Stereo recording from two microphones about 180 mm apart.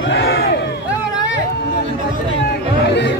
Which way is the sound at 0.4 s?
60° left (ahead or behind).